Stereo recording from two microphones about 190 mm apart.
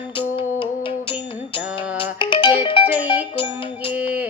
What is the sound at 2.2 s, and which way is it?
Music, 25° left (ahead or behind).